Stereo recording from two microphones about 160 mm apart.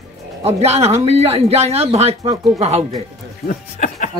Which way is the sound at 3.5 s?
55° left (ahead or behind).